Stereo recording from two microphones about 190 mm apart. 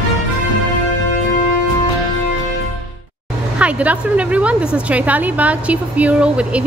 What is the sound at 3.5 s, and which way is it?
A woman's voice, 5° right (ahead or behind).